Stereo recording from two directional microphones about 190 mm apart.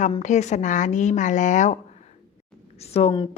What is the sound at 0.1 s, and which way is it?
A woman's voice, 40° left (ahead or behind).